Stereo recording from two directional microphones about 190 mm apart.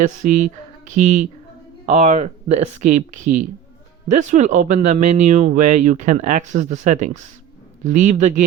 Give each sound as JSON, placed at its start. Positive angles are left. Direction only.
{"t": 0.0, "sound": "speech", "side_deg": -40}